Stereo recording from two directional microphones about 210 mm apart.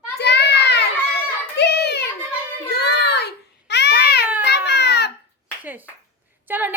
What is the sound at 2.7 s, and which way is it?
Child singing, 50° left (ahead or behind).